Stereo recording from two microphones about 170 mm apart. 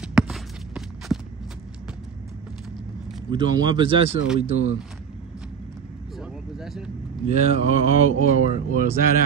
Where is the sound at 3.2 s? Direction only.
25° right (ahead or behind).